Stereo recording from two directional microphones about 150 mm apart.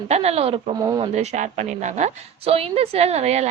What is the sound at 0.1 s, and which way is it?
A woman's voice, 45° right (ahead or behind).